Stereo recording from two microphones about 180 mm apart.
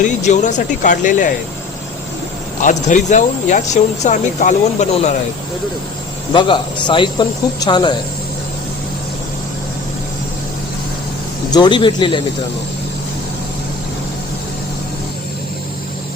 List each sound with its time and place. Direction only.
0.2 s speech: 40° left (ahead or behind)
2.6 s speech: 45° left (ahead or behind)
6.8 s speech: 25° left (ahead or behind)
11.5 s speech: 25° left (ahead or behind)